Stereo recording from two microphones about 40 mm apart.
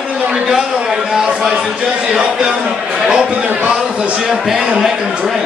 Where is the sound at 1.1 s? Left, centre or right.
Centre.